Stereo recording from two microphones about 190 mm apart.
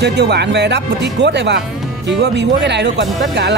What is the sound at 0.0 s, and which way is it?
Speech, 60° right (ahead or behind).